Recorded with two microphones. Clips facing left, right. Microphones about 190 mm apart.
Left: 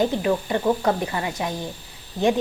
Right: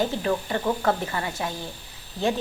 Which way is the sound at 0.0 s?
15° left (ahead or behind).